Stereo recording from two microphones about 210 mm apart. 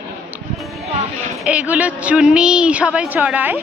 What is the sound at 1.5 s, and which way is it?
A woman's voice, 5° right (ahead or behind).